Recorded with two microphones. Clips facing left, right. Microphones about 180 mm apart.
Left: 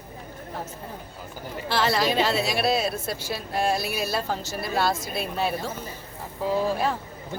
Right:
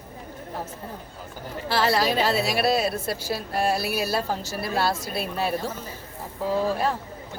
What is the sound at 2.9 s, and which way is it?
Speech, 35° right (ahead or behind).